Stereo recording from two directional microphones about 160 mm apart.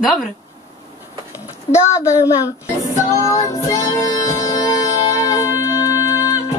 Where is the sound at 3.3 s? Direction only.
20° left (ahead or behind).